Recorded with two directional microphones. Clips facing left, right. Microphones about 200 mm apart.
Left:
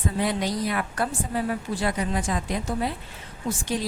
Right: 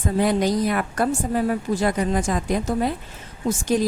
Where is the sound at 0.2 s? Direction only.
45° right (ahead or behind).